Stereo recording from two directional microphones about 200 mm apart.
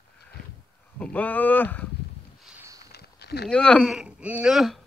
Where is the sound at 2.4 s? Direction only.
10° right (ahead or behind).